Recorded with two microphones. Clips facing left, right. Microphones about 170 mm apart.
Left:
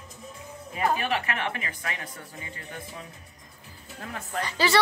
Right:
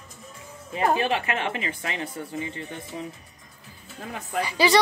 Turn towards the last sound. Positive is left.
turn(degrees=-15)  # may be behind; listen again after turning